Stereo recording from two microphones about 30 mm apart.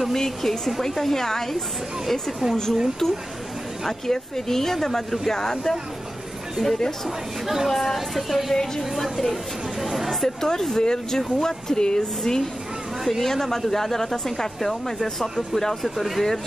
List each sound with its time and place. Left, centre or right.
0.1 s speech: centre
4.1 s speech: centre
5.3 s speech: centre
6.5 s speech: centre
7.4 s speech: centre
7.7 s speech: centre
10.2 s speech: centre